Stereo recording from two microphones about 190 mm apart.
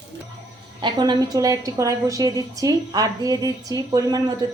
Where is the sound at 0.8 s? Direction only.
20° right (ahead or behind).